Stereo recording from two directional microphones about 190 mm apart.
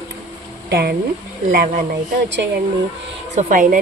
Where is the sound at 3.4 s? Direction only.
45° right (ahead or behind).